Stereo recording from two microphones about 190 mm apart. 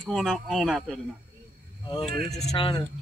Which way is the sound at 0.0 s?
Centre (ahead or behind).